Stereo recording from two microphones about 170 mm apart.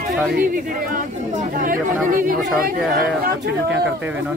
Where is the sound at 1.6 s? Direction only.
55° right (ahead or behind).